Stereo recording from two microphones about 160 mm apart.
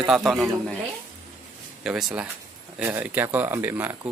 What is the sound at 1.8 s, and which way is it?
Speech, centre (ahead or behind).